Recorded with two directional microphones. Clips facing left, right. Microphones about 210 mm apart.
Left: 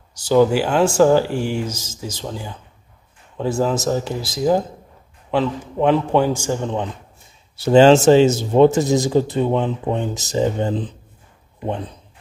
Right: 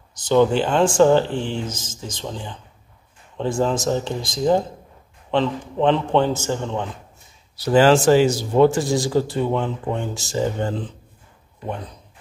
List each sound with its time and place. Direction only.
0.1 s speech: 10° left (ahead or behind)
7.5 s a man's voice: 25° left (ahead or behind)